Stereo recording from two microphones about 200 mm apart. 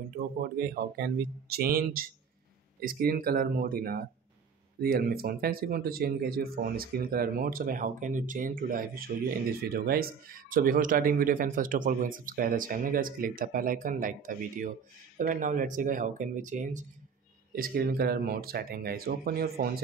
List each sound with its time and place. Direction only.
0.1 s speech: 45° right (ahead or behind)